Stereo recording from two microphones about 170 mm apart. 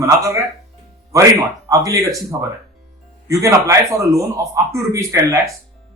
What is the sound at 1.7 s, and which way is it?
A man's voice, 20° right (ahead or behind).